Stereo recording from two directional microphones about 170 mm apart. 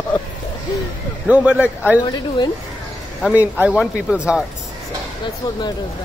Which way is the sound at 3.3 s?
10° right (ahead or behind).